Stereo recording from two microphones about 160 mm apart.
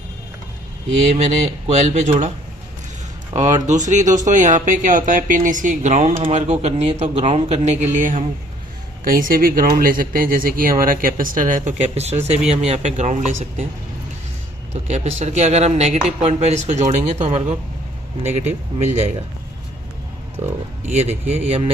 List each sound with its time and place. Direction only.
1.0 s speech: 45° right (ahead or behind)
3.3 s speech: 45° right (ahead or behind)
14.7 s speech: 45° right (ahead or behind)
20.4 s speech: 45° right (ahead or behind)